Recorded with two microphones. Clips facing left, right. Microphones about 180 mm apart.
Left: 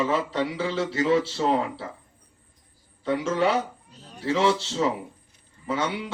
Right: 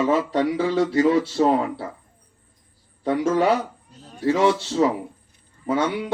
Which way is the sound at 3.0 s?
50° right (ahead or behind).